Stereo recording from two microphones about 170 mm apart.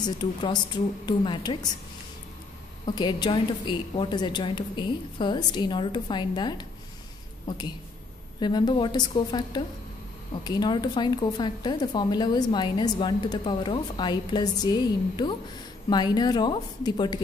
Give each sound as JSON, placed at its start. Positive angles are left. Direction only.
{"t": 0.0, "sound": "a woman's voice", "side_deg": 25}
{"t": 2.8, "sound": "a woman's voice", "side_deg": 25}